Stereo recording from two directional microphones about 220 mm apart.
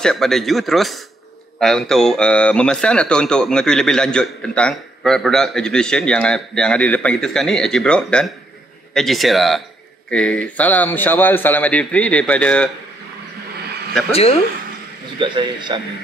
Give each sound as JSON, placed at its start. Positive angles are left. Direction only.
{"t": 0.0, "sound": "a man's voice", "side_deg": 0}
{"t": 15.1, "sound": "a man's voice", "side_deg": -20}